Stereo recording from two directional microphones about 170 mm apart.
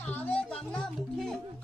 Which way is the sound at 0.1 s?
10° left (ahead or behind).